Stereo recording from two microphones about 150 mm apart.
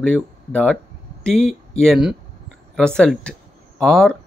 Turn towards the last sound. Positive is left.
turn(degrees=5)  # may be behind; listen again after turning